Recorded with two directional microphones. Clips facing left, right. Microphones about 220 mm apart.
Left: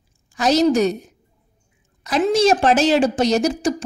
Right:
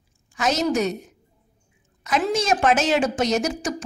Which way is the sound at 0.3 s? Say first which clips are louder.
Left 6 dB; 35° left (ahead or behind).